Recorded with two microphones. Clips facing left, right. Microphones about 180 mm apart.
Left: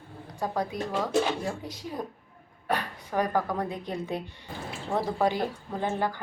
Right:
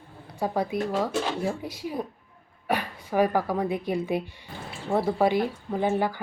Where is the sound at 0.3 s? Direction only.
10° right (ahead or behind).